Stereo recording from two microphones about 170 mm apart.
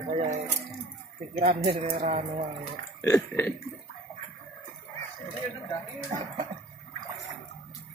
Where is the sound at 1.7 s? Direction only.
35° right (ahead or behind).